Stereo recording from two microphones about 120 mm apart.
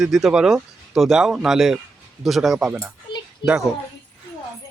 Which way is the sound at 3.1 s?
40° left (ahead or behind).